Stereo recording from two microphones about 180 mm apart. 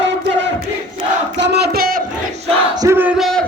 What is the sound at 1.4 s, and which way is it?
Battle cry, 70° right (ahead or behind).